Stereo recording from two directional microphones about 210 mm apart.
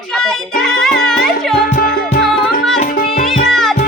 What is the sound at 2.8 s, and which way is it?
Music, 45° left (ahead or behind).